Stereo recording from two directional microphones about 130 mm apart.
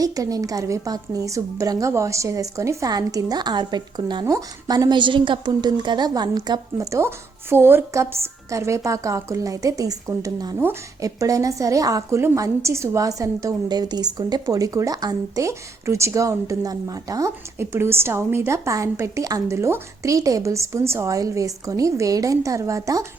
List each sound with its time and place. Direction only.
0.0 s a woman's voice: 25° right (ahead or behind)